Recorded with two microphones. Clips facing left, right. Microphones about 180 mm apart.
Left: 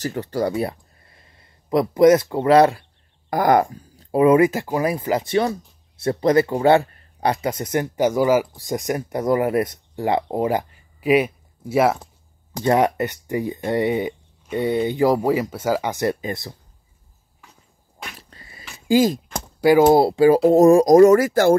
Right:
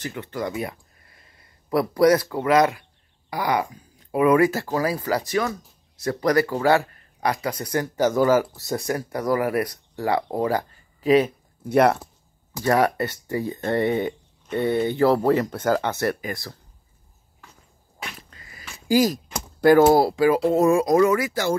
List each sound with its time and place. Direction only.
0.0 s speech: 40° left (ahead or behind)
3.3 s speech: 50° left (ahead or behind)
4.0 s speech: 30° left (ahead or behind); by 12.0 s 5° left (ahead or behind)
12.6 s speech: 20° left (ahead or behind)
18.3 s a sound: 30° left (ahead or behind)
18.9 s speech: 25° left (ahead or behind)
19.6 s speech: 15° left (ahead or behind); by 21.5 s 50° left (ahead or behind)